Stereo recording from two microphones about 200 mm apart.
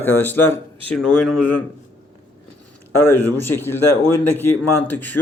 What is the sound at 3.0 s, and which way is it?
Speech, 10° left (ahead or behind).